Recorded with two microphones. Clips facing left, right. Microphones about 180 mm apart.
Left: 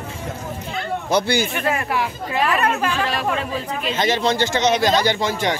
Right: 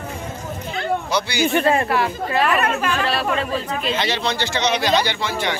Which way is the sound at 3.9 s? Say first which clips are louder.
Left 5 dB; 45° left (ahead or behind).